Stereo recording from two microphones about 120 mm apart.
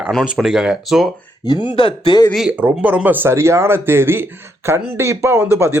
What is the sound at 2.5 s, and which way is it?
Speech, 10° right (ahead or behind).